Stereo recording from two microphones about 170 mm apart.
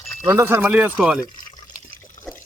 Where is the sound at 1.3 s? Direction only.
50° left (ahead or behind).